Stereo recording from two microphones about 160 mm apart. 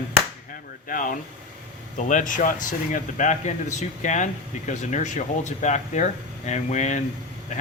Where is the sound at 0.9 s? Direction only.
55° left (ahead or behind).